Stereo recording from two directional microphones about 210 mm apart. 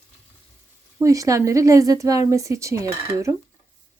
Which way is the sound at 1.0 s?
15° right (ahead or behind).